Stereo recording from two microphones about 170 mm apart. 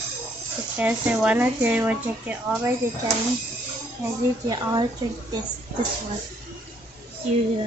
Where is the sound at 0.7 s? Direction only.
10° right (ahead or behind).